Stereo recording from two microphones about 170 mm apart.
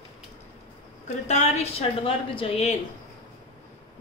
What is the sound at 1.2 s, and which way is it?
Speech, 40° left (ahead or behind).